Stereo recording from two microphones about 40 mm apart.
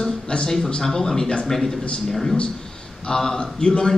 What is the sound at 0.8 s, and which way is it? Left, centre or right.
A man's voice, centre.